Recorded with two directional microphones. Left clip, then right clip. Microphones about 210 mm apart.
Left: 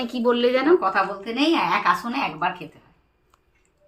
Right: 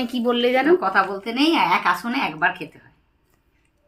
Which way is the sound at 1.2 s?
10° left (ahead or behind).